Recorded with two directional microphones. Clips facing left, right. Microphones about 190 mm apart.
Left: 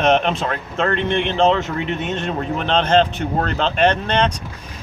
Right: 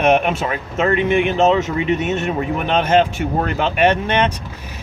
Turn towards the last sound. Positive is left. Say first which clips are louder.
# right 1 dB
turn(degrees=-10)  # may be behind; listen again after turning